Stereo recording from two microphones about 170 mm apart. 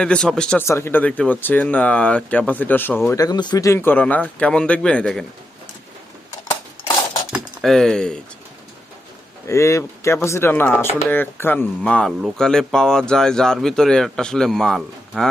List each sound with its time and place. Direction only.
0.0 s speech: 5° left (ahead or behind)
3.1 s speech: 20° left (ahead or behind); by 5.2 s 5° left (ahead or behind)
6.5 s a sound: 15° left (ahead or behind)
7.3 s speech: centre (ahead or behind)
9.5 s speech: 15° left (ahead or behind); by 15.3 s centre (ahead or behind)